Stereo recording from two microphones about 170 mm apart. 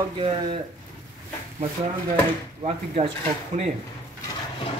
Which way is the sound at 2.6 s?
40° right (ahead or behind).